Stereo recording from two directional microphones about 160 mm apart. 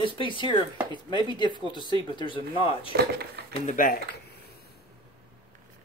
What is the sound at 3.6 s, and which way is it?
Speech, 60° left (ahead or behind).